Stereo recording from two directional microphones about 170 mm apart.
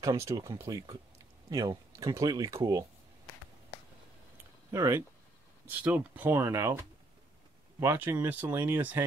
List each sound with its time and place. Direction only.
0.0 s speech: 20° right (ahead or behind)
4.6 s speech: 15° right (ahead or behind)
7.8 s speech: 15° right (ahead or behind)